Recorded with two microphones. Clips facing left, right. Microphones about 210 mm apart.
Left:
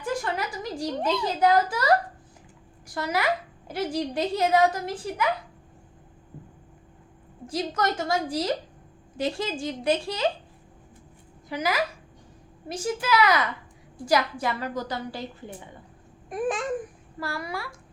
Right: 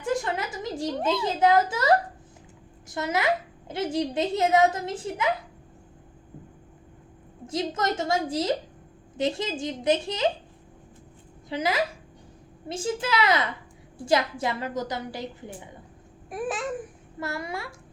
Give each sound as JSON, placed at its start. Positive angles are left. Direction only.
{"t": 0.0, "sound": "a sound", "side_deg": -25}
{"t": 1.2, "sound": "a woman's voice", "side_deg": -25}
{"t": 7.4, "sound": "a woman's voice", "side_deg": -25}
{"t": 11.4, "sound": "a woman's voice", "side_deg": -25}
{"t": 16.3, "sound": "babbling", "side_deg": -5}
{"t": 17.2, "sound": "a woman's voice", "side_deg": -25}